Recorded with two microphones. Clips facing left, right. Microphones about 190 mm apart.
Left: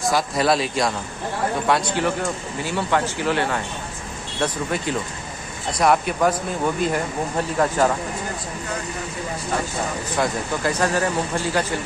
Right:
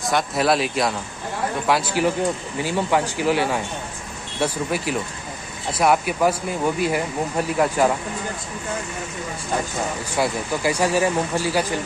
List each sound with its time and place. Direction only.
0.1 s speech: centre (ahead or behind)
10.1 s speech: 10° right (ahead or behind)